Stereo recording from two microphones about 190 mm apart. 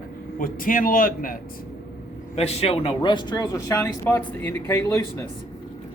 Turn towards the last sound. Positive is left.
turn(degrees=15)  # may be behind; listen again after turning